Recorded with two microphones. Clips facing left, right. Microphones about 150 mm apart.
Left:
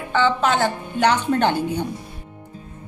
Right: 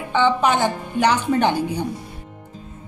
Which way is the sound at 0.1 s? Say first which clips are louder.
Right 1 dB; 15° right (ahead or behind).